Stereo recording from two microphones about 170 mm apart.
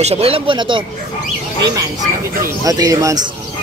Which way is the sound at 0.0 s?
35° right (ahead or behind).